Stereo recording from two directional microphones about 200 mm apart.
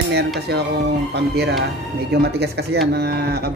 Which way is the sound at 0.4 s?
55° right (ahead or behind).